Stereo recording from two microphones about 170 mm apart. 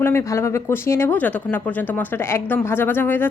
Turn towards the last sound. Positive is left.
turn(degrees=10)  # may be behind; listen again after turning